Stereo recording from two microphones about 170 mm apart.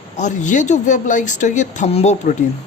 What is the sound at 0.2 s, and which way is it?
Speech, 45° left (ahead or behind).